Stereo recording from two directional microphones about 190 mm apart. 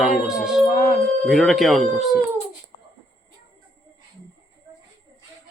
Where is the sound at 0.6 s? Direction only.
45° left (ahead or behind).